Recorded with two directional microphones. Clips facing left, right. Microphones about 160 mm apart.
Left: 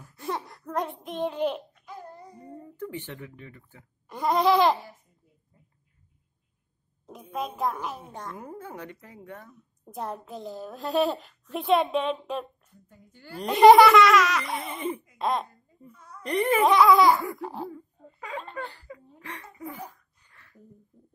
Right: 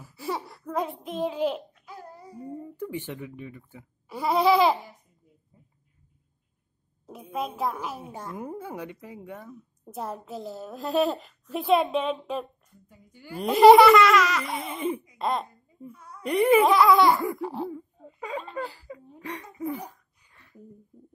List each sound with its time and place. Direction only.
0.0 s a sound: 5° right (ahead or behind)
4.2 s babbling: 5° right (ahead or behind)
7.1 s a child's voice: 5° right (ahead or behind)
12.8 s a woman's voice: 10° right (ahead or behind)
13.5 s a woman's voice: centre (ahead or behind)
15.4 s speech: 10° right (ahead or behind)
17.6 s a sound: 20° right (ahead or behind)
18.4 s a woman's voice: 5° right (ahead or behind)
18.9 s speech: 20° right (ahead or behind)
20.3 s a sound: 20° right (ahead or behind)